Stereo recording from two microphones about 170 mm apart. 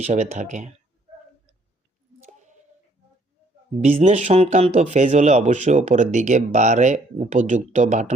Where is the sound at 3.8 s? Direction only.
45° right (ahead or behind).